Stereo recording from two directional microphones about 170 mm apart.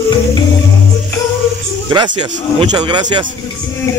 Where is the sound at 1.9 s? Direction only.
25° right (ahead or behind).